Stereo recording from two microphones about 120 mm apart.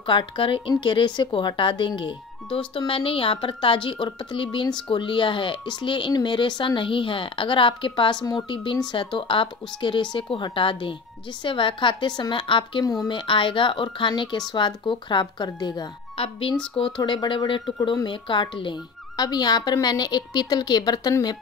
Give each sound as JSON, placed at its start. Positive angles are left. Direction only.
{"t": 0.0, "sound": "speech", "side_deg": 45}
{"t": 16.2, "sound": "speech", "side_deg": 50}